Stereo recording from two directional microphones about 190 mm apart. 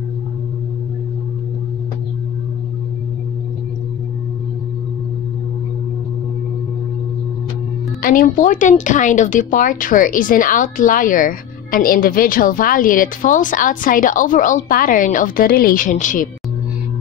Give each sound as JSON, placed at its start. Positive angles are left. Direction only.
{"t": 8.0, "sound": "speech", "side_deg": 45}